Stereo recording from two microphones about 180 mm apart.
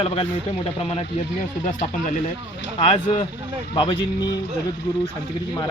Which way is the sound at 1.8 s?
45° left (ahead or behind).